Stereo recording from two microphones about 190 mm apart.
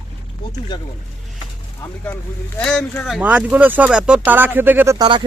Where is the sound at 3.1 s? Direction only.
5° right (ahead or behind).